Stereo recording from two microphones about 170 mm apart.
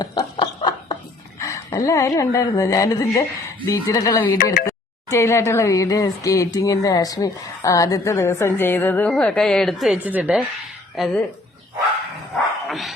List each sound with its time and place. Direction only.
0.0 s snicker: 25° left (ahead or behind)
1.4 s speech: 20° left (ahead or behind); by 11.2 s centre (ahead or behind)
12.6 s dog: centre (ahead or behind)